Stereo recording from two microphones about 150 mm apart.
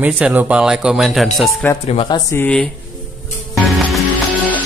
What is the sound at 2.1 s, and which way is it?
Speech, 20° left (ahead or behind).